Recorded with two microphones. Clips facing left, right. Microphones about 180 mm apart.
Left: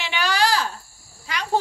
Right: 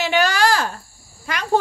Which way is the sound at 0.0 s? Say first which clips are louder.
Right 5 dB; 45° right (ahead or behind).